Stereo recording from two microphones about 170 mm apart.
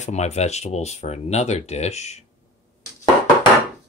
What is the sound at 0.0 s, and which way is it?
Speech, 40° left (ahead or behind).